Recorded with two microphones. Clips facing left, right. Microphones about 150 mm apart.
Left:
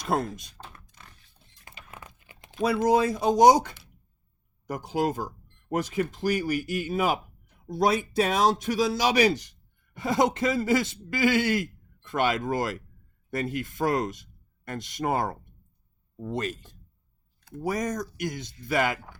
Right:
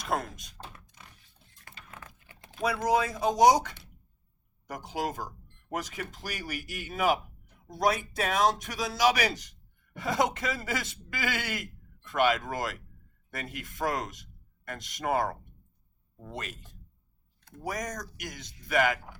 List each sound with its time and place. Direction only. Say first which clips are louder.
0.0 s speech: left 4 dB; 30° left (ahead or behind)
1.6 s typing: left 2 dB; 20° left (ahead or behind)
4.7 s a man's voice: left 6 dB; 30° left (ahead or behind)
16.3 s a man's voice: left 9 dB; 35° left (ahead or behind)